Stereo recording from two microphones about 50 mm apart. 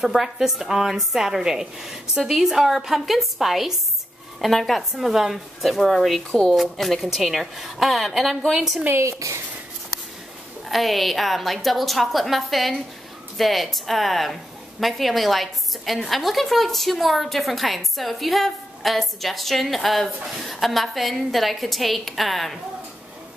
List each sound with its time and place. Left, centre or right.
0.0 s a woman's voice: centre
4.9 s a woman's voice: centre
9.0 s speech: right
10.7 s a woman's voice: centre